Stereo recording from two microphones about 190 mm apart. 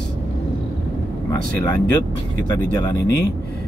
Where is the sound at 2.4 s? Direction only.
20° left (ahead or behind).